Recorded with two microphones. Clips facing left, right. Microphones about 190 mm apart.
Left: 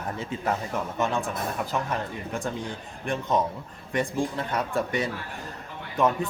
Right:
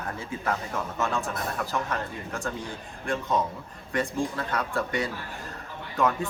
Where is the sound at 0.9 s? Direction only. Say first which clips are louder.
Left 2 dB; 15° left (ahead or behind).